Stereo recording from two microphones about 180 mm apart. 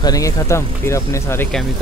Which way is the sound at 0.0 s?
20° left (ahead or behind).